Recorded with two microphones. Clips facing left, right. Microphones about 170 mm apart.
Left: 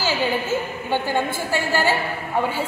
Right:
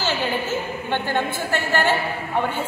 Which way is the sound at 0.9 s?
10° left (ahead or behind).